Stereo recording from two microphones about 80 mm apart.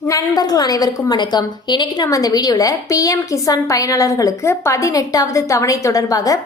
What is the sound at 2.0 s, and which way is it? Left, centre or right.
A woman's voice, left.